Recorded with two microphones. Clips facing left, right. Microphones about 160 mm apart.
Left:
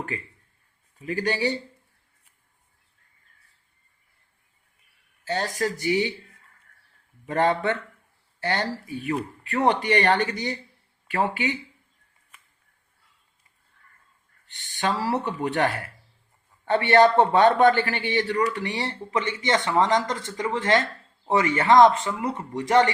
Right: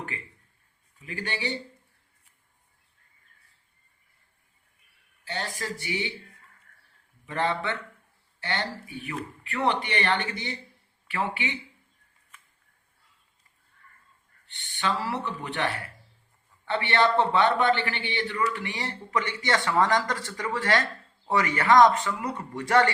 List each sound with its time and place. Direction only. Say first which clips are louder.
0.9 s a man's voice: left 8 dB; 40° left (ahead or behind)
5.2 s a man's voice: left 8 dB; 40° left (ahead or behind)
7.3 s a man's voice: left 6 dB; 40° left (ahead or behind)
14.4 s a man's voice: left 3 dB; 40° left (ahead or behind); by 22.9 s 20° left (ahead or behind)